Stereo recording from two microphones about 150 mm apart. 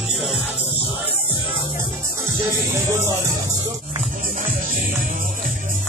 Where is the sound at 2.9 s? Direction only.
15° right (ahead or behind).